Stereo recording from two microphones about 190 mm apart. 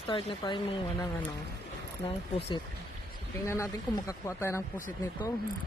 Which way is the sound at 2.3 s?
30° left (ahead or behind).